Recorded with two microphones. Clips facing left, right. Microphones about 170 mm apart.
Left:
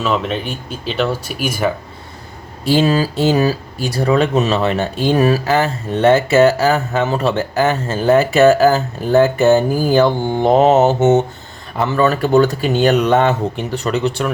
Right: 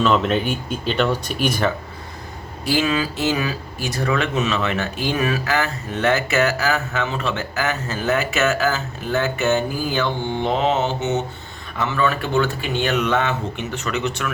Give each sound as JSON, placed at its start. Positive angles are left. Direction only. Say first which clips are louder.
{"t": 0.0, "sound": "speech", "louder": "right 1 dB", "side_deg": 0}
{"t": 2.6, "sound": "speech", "louder": "left 6 dB", "side_deg": 35}